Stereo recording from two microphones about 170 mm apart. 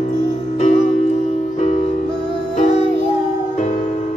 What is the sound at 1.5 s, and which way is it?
Music, 45° left (ahead or behind).